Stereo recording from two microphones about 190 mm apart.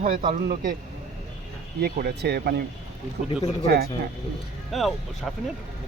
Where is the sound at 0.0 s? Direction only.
45° right (ahead or behind).